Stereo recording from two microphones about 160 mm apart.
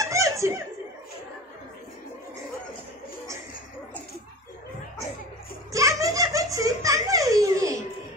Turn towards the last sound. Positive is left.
turn(degrees=-20)  # may be behind; listen again after turning